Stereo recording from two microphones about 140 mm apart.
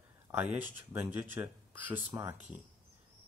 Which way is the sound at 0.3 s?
15° right (ahead or behind).